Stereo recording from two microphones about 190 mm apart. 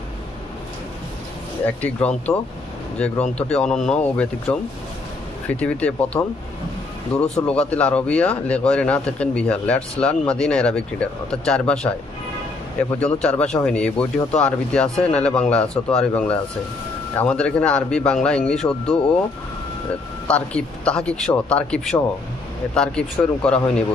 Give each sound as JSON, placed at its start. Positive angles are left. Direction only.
{"t": 1.6, "sound": "speech", "side_deg": 5}
{"t": 5.5, "sound": "speech", "side_deg": 5}
{"t": 12.9, "sound": "speech", "side_deg": 5}
{"t": 20.2, "sound": "speech", "side_deg": 5}